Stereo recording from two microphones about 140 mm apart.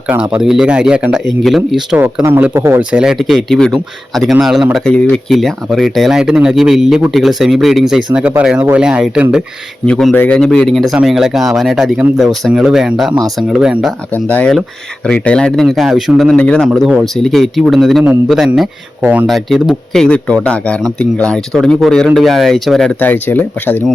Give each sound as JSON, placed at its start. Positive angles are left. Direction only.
{"t": 0.1, "sound": "speech", "side_deg": -5}
{"t": 2.0, "sound": "speech", "side_deg": -15}
{"t": 3.0, "sound": "speech", "side_deg": 0}
{"t": 9.8, "sound": "speech", "side_deg": 5}
{"t": 14.1, "sound": "speech", "side_deg": 10}